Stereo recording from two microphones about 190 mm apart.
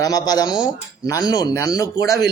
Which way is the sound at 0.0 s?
20° left (ahead or behind).